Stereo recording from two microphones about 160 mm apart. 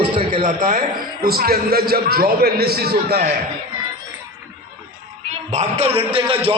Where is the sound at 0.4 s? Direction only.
55° right (ahead or behind); by 3.2 s 75° right (ahead or behind).